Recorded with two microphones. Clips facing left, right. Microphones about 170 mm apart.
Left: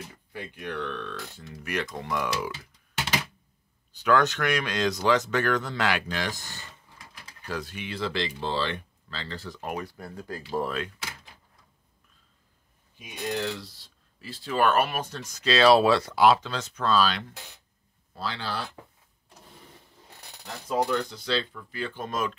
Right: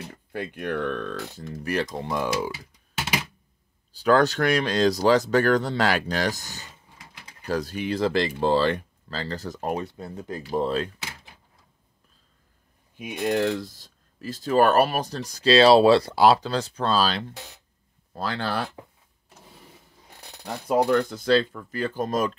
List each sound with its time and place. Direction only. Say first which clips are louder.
0.1 s speech: right 7 dB; 55° right (ahead or behind); by 2.5 s 30° right (ahead or behind)
3.9 s speech: right 3 dB; 35° right (ahead or behind)
9.8 s speech: right 4 dB; 25° right (ahead or behind)
12.9 s speech: right 7 dB; 55° right (ahead or behind); by 17.2 s 35° right (ahead or behind)
18.1 s speech: right 5 dB; 50° right (ahead or behind)
20.4 s speech: right 5 dB; 60° right (ahead or behind); by 22.3 s 40° right (ahead or behind)